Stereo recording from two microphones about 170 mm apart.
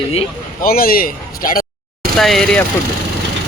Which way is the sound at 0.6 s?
60° left (ahead or behind).